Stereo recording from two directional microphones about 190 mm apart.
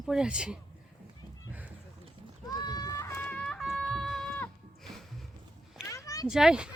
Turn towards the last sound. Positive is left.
turn(degrees=-5)  # may be behind; listen again after turning